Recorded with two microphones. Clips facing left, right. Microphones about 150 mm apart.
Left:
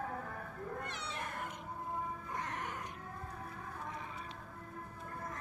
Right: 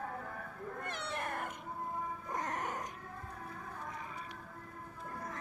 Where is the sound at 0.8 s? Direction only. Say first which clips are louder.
Right 3 dB; 55° right (ahead or behind).